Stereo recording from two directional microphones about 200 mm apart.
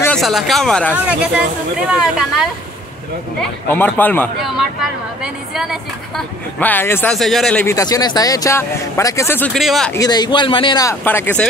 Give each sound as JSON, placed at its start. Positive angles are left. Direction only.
{"t": 0.0, "sound": "a woman's voice", "side_deg": 0}
{"t": 3.7, "sound": "speech", "side_deg": 10}
{"t": 5.2, "sound": "a woman's voice", "side_deg": 0}
{"t": 6.6, "sound": "speech", "side_deg": 10}
{"t": 7.7, "sound": "speech", "side_deg": 20}
{"t": 9.9, "sound": "speech", "side_deg": 20}